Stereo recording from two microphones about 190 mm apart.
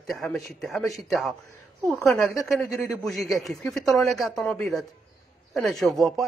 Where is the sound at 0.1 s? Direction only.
Centre (ahead or behind).